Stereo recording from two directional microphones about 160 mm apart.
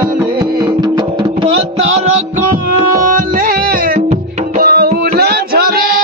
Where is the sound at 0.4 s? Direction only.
25° right (ahead or behind).